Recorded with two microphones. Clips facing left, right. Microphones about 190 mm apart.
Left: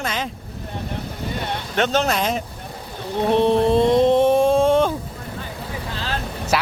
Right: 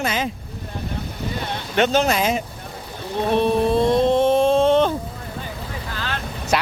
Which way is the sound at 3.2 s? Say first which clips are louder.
Left 2 dB; 20° left (ahead or behind).